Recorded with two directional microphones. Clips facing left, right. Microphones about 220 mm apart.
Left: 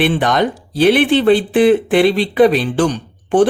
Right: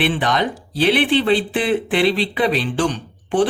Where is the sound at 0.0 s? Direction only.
45° left (ahead or behind).